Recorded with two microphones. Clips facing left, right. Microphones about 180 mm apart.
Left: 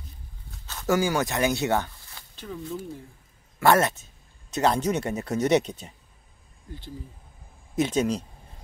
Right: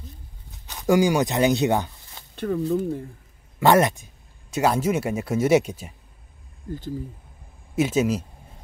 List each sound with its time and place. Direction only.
0.5 s speech: 15° right (ahead or behind)
2.3 s speech: 60° right (ahead or behind)
3.5 s speech: 15° right (ahead or behind)
7.7 s speech: 5° right (ahead or behind)